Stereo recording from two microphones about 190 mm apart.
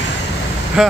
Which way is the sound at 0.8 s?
5° right (ahead or behind).